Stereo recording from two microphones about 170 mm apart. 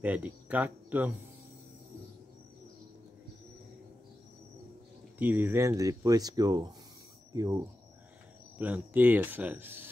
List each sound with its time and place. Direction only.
0.0 s speech: 10° right (ahead or behind)
5.2 s speech: 10° right (ahead or behind)
8.5 s speech: 10° right (ahead or behind)